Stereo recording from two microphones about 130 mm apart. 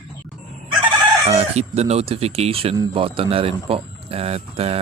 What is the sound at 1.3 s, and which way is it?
Speech, 55° right (ahead or behind).